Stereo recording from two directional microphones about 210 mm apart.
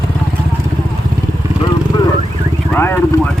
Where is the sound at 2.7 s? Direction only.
10° left (ahead or behind).